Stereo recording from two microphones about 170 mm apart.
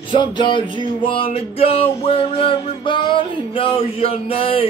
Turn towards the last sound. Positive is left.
turn(degrees=35)  # may be behind; listen again after turning